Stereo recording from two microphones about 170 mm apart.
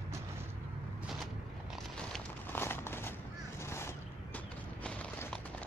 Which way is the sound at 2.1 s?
15° left (ahead or behind).